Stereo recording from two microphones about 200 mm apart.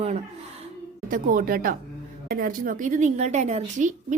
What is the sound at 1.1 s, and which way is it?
A woman's voice, 45° right (ahead or behind).